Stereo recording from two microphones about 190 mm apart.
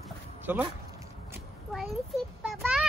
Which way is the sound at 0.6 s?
15° right (ahead or behind).